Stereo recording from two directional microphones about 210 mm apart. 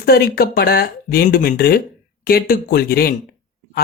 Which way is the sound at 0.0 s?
45° left (ahead or behind).